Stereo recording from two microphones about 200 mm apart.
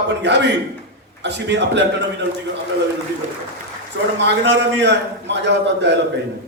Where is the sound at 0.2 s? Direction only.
60° right (ahead or behind).